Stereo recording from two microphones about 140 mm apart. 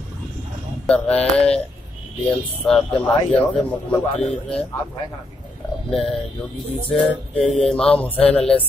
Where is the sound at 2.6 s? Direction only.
5° left (ahead or behind).